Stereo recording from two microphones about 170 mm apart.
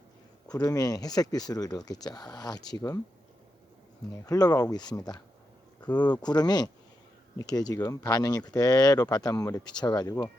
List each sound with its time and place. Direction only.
0.4 s speech: 20° left (ahead or behind)
4.3 s speech: 20° left (ahead or behind)